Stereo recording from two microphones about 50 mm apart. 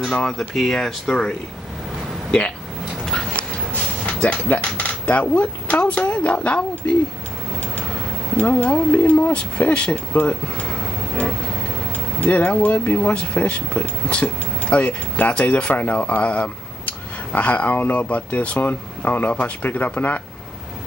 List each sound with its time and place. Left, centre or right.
0.0 s speech: centre
3.7 s speech: left
8.4 s speech: left
12.2 s speech: left